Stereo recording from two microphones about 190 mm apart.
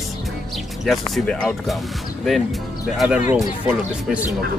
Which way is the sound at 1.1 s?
5° left (ahead or behind).